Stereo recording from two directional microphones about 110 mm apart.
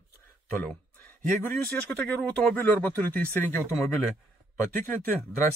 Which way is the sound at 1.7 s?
10° left (ahead or behind).